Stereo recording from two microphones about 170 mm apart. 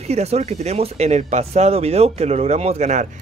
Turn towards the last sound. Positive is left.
turn(degrees=-45)  # may be behind; listen again after turning